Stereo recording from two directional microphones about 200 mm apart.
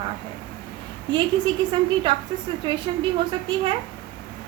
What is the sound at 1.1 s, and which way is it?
A woman's voice, 25° right (ahead or behind).